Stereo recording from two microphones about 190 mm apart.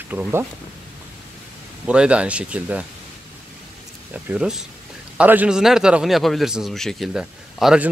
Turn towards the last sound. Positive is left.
turn(degrees=-5)  # may be behind; listen again after turning